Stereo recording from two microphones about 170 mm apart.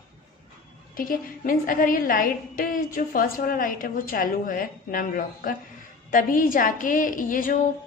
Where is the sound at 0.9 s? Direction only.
55° left (ahead or behind).